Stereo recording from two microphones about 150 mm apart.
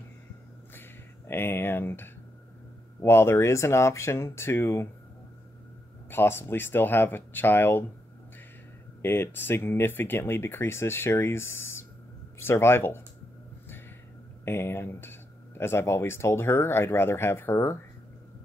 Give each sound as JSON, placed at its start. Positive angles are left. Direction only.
{"t": 0.7, "sound": "a sound", "side_deg": 15}
{"t": 3.0, "sound": "speech", "side_deg": 15}
{"t": 6.0, "sound": "speech", "side_deg": 15}
{"t": 9.0, "sound": "speech", "side_deg": 15}
{"t": 14.4, "sound": "speech", "side_deg": 15}